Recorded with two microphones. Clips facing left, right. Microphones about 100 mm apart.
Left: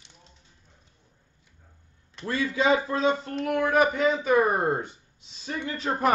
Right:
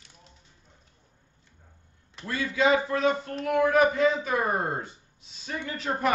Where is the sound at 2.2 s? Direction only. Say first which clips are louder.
Left 1 dB; 30° left (ahead or behind).